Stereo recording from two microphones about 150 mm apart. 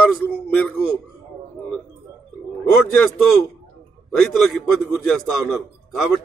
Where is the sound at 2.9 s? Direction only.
5° left (ahead or behind).